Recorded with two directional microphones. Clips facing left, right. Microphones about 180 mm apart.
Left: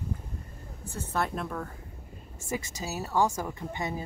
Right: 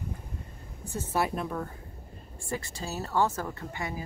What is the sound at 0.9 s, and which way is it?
Speech, 10° right (ahead or behind).